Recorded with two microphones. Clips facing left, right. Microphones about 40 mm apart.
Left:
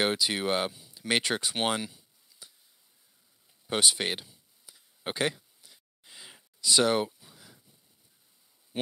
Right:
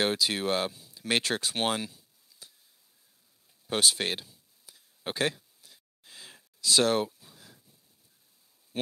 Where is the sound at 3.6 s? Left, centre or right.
Centre.